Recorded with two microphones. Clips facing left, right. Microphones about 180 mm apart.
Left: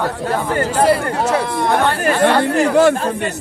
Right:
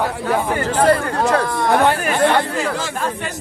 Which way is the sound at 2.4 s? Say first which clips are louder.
Left 10 dB; 65° left (ahead or behind).